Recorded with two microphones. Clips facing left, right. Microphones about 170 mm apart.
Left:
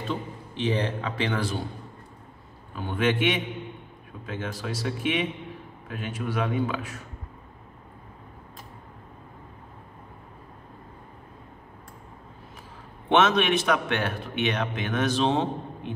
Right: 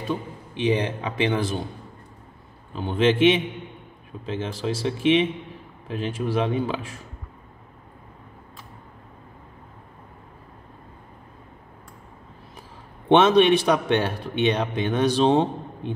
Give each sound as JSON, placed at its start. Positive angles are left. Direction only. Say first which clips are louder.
{"t": 0.1, "sound": "a man's voice", "louder": "right 5 dB", "side_deg": -15}
{"t": 2.7, "sound": "speech", "louder": "right 5 dB", "side_deg": -25}
{"t": 13.1, "sound": "a man's voice", "louder": "right 6 dB", "side_deg": -30}